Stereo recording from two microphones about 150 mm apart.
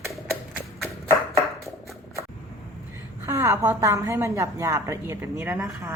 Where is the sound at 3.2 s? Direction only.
20° right (ahead or behind).